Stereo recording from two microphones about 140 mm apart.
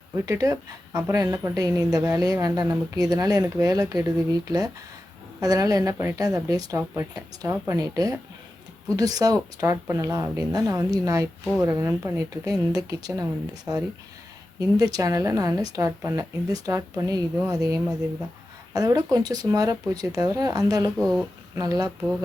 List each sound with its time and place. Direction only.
0.3 s a woman's voice: 25° right (ahead or behind)
21.0 s speech: 5° left (ahead or behind)
21.6 s a woman's voice: 25° right (ahead or behind)